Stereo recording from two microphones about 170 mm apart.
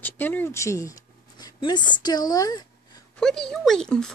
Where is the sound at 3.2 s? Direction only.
5° left (ahead or behind).